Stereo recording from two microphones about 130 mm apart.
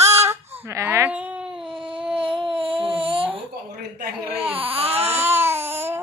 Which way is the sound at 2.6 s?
45° right (ahead or behind).